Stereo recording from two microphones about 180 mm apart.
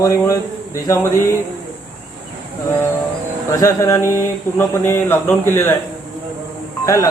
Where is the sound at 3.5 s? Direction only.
15° left (ahead or behind).